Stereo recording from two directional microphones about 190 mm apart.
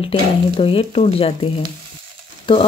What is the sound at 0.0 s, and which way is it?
Speech, 30° left (ahead or behind).